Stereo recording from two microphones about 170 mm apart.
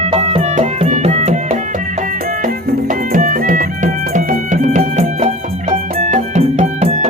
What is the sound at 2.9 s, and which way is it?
Music, 50° right (ahead or behind).